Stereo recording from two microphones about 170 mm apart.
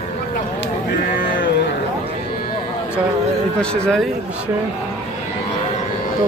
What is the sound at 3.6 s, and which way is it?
Speech, 5° left (ahead or behind).